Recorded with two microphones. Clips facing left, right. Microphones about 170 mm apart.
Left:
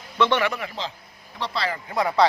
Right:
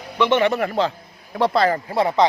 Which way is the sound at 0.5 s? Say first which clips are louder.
Right 11 dB; 50° right (ahead or behind).